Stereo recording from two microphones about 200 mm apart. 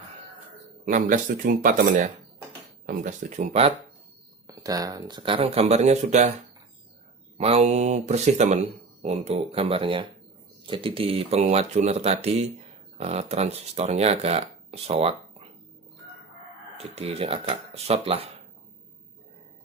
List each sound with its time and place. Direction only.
0.8 s speech: 40° right (ahead or behind)
4.5 s speech: 20° right (ahead or behind); by 6.3 s 35° right (ahead or behind)
7.3 s speech: 30° right (ahead or behind)
16.7 s speech: 30° right (ahead or behind)